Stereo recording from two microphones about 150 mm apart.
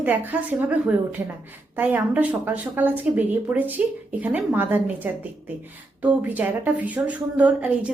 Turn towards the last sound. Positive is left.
turn(degrees=-10)  # may be behind; listen again after turning